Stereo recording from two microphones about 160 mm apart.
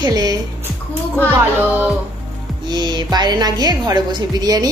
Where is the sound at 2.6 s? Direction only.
25° right (ahead or behind).